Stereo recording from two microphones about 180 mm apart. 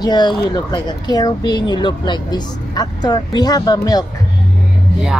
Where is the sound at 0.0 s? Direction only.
25° left (ahead or behind).